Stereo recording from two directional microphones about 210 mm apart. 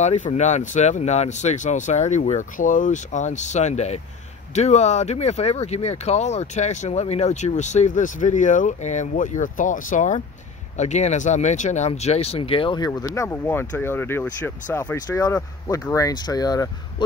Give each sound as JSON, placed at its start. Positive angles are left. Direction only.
{"t": 0.0, "sound": "speech", "side_deg": 35}